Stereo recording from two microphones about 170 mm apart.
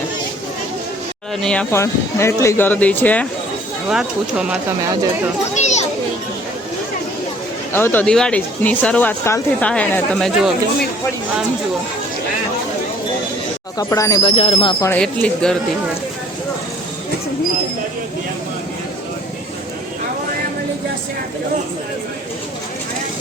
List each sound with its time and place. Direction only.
1.4 s speech: 5° left (ahead or behind)
1.7 s speech: 15° left (ahead or behind)
3.8 s speech: 5° right (ahead or behind)
5.5 s children playing: 45° left (ahead or behind)
7.7 s speech: 15° left (ahead or behind)
13.7 s speech: 20° left (ahead or behind)
14.3 s speech: 35° left (ahead or behind)
14.8 s speech: 15° left (ahead or behind)